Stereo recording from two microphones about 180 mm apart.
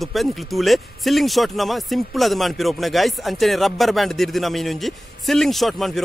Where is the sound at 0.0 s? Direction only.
Centre (ahead or behind).